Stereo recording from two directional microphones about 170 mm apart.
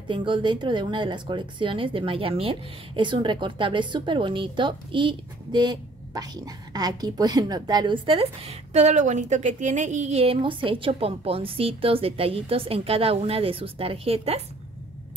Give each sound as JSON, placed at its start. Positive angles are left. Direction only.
{"t": 0.1, "sound": "speech", "side_deg": -30}